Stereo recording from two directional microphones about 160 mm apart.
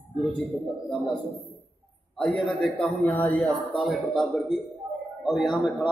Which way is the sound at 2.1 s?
5° left (ahead or behind).